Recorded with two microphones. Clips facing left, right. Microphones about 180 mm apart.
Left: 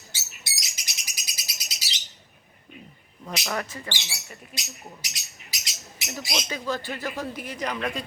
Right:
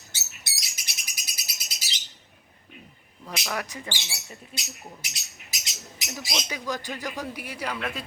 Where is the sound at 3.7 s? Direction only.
15° right (ahead or behind).